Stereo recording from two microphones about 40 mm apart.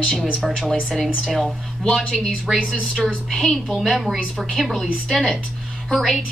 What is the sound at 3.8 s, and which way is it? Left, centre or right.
A woman's voice, centre.